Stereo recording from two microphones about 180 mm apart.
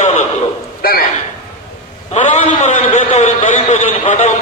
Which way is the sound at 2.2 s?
45° left (ahead or behind).